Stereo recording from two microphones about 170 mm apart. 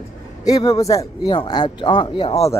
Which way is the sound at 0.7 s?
20° left (ahead or behind).